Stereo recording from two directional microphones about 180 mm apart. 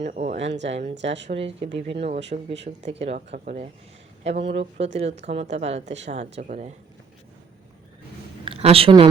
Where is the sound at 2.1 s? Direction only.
75° right (ahead or behind).